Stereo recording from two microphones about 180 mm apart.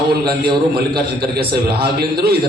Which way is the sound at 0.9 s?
60° right (ahead or behind).